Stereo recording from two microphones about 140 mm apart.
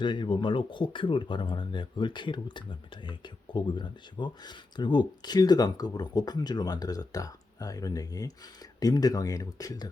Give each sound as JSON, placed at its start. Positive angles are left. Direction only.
{"t": 0.0, "sound": "speech", "side_deg": 35}